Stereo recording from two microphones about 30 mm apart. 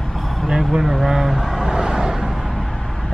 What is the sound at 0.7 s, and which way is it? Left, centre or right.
Speech, centre.